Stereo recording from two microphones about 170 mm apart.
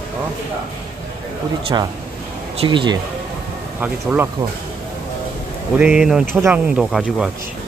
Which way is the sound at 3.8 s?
10° right (ahead or behind).